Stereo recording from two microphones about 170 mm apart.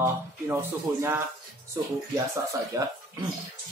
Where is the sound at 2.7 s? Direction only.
20° right (ahead or behind).